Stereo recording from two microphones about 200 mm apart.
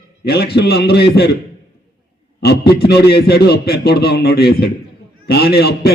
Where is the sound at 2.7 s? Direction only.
50° left (ahead or behind).